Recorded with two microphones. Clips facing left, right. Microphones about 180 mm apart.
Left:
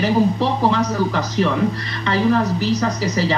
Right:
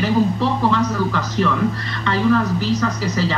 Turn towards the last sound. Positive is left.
turn(degrees=15)  # may be behind; listen again after turning